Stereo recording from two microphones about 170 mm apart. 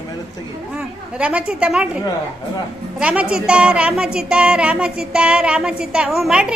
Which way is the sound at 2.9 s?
5° right (ahead or behind).